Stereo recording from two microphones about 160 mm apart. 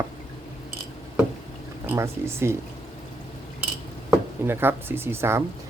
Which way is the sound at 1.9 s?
15° right (ahead or behind).